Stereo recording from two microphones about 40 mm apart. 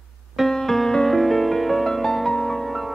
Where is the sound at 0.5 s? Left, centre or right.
Centre.